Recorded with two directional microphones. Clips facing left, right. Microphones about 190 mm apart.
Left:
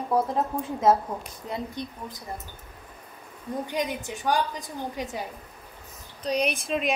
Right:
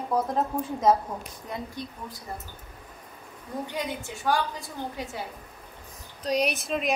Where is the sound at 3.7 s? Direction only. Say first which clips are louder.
Left 3 dB; 20° left (ahead or behind).